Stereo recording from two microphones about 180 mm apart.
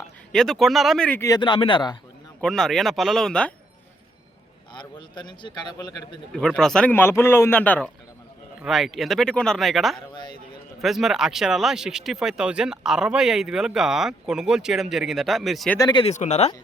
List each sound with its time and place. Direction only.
0.3 s speech: centre (ahead or behind)
1.4 s a man's voice: 25° left (ahead or behind)
2.4 s speech: 5° left (ahead or behind)
4.7 s a man's voice: 25° left (ahead or behind)
6.3 s speech: 5° left (ahead or behind)
8.6 s speech: centre (ahead or behind)
15.8 s a man's voice: 25° left (ahead or behind)
16.1 s speech: 40° left (ahead or behind)